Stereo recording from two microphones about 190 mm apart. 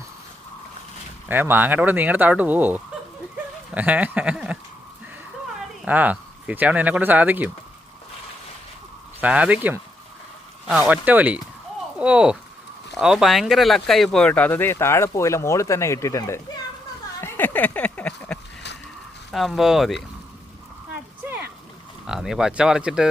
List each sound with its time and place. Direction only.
1.3 s speech: 10° right (ahead or behind)
5.8 s speech: 10° right (ahead or behind)
9.2 s speech: 5° right (ahead or behind); by 16.4 s 15° left (ahead or behind)
17.2 s a sound: 10° left (ahead or behind)
19.3 s speech: centre (ahead or behind)
21.2 s a sound: 10° right (ahead or behind)
22.0 s speech: centre (ahead or behind)